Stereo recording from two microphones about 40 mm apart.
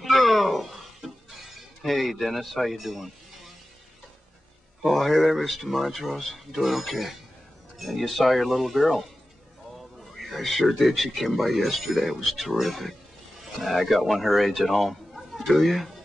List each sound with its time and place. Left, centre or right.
0.0 s a sound: centre
4.8 s speech: centre
8.2 s speech: centre
10.2 s speech: centre